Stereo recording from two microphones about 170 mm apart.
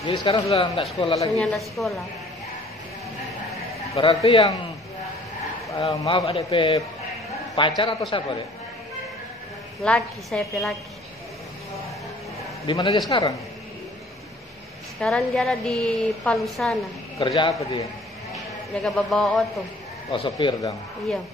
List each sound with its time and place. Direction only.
0.0 s speech: 30° left (ahead or behind)
1.4 s a woman's voice: centre (ahead or behind)
3.9 s speech: 35° left (ahead or behind)
5.7 s a man's voice: 30° left (ahead or behind)
9.8 s a woman's voice: centre (ahead or behind)
12.6 s a man's voice: 25° left (ahead or behind)
15.0 s a woman's voice: 5° left (ahead or behind)
17.2 s a man's voice: 30° left (ahead or behind)
18.8 s a woman's voice: 5° left (ahead or behind)
20.1 s a man's voice: 30° left (ahead or behind)